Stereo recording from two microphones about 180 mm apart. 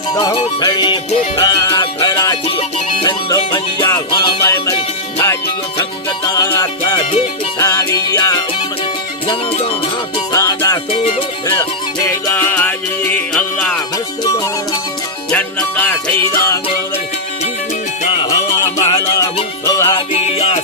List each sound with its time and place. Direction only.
0.2 s music: 25° left (ahead or behind)
10.3 s music: 20° left (ahead or behind)
12.0 s music: 10° left (ahead or behind)
15.3 s music: 10° left (ahead or behind)
18.9 s music: 20° left (ahead or behind)
20.1 s music: 35° left (ahead or behind)